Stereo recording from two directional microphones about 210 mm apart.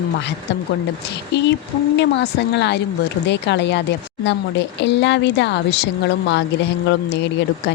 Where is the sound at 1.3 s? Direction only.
55° left (ahead or behind).